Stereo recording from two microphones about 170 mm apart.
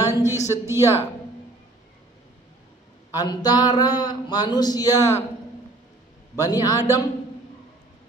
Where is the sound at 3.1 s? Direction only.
25° left (ahead or behind).